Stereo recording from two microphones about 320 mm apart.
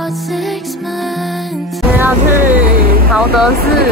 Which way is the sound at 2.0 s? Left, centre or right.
Centre.